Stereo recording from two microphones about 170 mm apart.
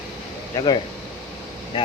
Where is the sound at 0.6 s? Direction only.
25° left (ahead or behind).